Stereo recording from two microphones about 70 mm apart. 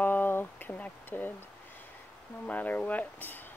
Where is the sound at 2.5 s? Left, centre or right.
Left.